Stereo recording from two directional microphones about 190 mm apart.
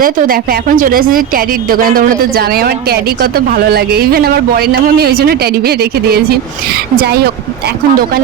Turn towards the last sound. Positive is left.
turn(degrees=-55)  # may be behind; listen again after turning